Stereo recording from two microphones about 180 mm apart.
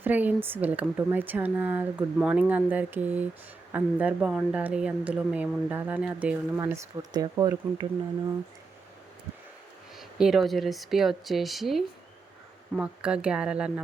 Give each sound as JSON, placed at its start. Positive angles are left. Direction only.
{"t": 0.0, "sound": "speech", "side_deg": -10}
{"t": 6.6, "sound": "speech", "side_deg": -20}
{"t": 10.0, "sound": "speech", "side_deg": 0}